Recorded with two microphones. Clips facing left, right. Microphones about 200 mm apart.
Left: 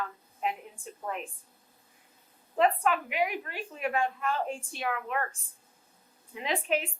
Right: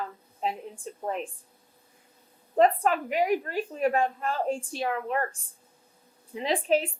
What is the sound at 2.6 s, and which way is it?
A woman's voice, 40° right (ahead or behind).